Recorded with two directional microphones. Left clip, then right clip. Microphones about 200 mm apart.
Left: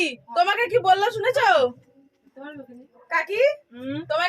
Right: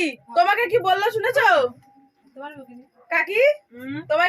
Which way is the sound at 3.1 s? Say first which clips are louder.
Right 2 dB; 40° right (ahead or behind).